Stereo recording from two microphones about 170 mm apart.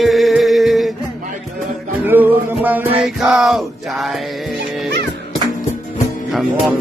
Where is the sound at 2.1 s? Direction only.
10° right (ahead or behind).